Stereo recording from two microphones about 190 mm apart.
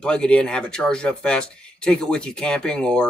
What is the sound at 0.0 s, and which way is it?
Speech, 5° left (ahead or behind).